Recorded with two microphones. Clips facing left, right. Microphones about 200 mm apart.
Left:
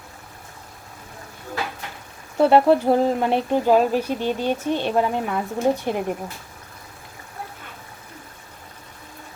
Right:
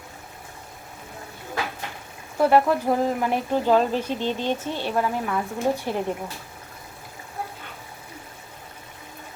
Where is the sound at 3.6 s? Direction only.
10° left (ahead or behind).